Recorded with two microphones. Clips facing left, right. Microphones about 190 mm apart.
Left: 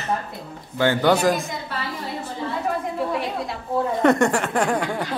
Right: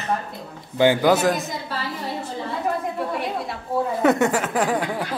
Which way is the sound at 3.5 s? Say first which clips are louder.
Left 1 dB; 5° right (ahead or behind).